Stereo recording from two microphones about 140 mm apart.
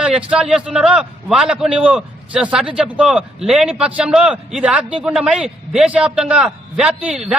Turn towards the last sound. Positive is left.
turn(degrees=-5)  # may be behind; listen again after turning